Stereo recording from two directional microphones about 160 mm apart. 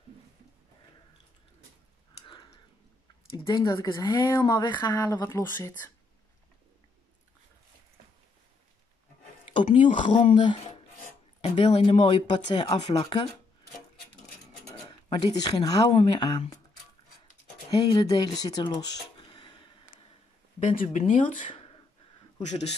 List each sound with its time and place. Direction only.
2.2 s a sound: 30° left (ahead or behind)
3.4 s speech: 25° left (ahead or behind)
9.5 s speech: 30° left (ahead or behind)
14.8 s speech: 30° left (ahead or behind)
17.6 s speech: 30° left (ahead or behind)
18.5 s a sound: 25° left (ahead or behind)
20.7 s a man's voice: 50° left (ahead or behind)